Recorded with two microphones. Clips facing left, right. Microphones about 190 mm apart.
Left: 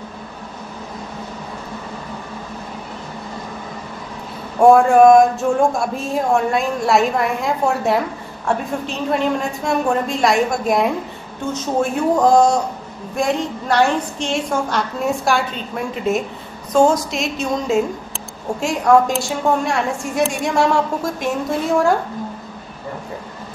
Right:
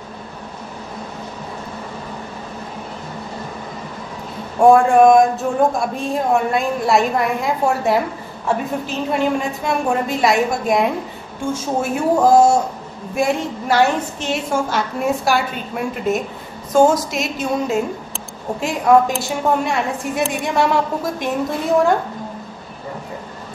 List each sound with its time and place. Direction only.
4.6 s speech: centre (ahead or behind)